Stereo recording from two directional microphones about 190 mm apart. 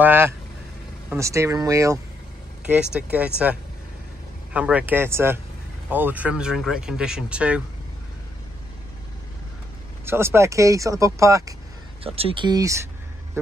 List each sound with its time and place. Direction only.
0.0 s speech: 10° right (ahead or behind)
2.6 s speech: 5° right (ahead or behind)
4.6 s speech: 5° right (ahead or behind)
10.0 s speech: 15° right (ahead or behind)
12.0 s speech: 30° right (ahead or behind)